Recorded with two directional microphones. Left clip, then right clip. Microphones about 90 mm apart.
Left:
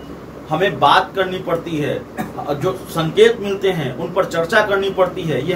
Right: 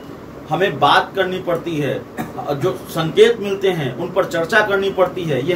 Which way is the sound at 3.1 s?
25° right (ahead or behind).